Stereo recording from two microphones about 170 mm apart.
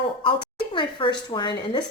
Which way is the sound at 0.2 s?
30° left (ahead or behind).